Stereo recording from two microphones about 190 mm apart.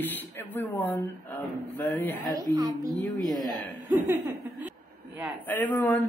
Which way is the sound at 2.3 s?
20° right (ahead or behind).